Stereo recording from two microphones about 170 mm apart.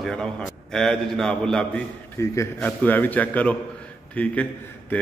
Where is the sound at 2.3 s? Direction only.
15° left (ahead or behind).